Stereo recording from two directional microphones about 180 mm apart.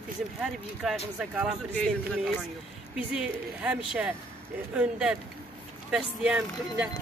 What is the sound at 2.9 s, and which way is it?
Speech, 5° right (ahead or behind).